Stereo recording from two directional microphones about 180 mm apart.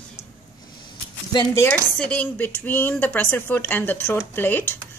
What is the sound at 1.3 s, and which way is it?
Speech, 15° left (ahead or behind).